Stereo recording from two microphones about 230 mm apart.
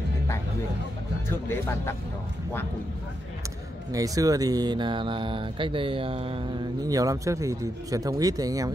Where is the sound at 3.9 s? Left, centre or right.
Centre.